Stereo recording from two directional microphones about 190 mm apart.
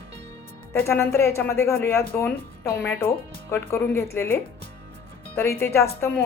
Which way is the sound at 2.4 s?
50° left (ahead or behind).